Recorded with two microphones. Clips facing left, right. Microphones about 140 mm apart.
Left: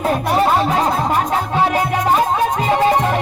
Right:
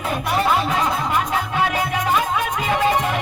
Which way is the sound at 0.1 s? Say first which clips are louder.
Left 3 dB; 40° left (ahead or behind).